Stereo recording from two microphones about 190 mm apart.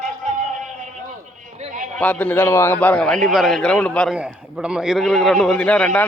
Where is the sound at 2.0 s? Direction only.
10° left (ahead or behind).